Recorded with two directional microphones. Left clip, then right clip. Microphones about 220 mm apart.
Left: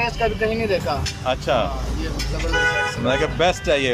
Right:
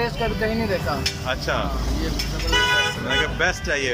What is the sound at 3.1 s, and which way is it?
Speech, 20° left (ahead or behind).